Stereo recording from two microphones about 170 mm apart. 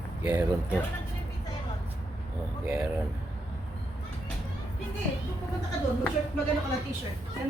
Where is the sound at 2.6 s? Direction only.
5° right (ahead or behind).